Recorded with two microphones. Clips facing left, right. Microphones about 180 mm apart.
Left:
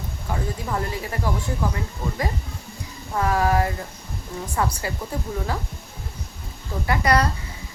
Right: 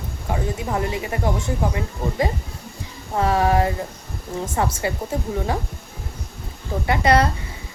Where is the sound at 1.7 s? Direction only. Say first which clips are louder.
Right 4 dB; 20° right (ahead or behind).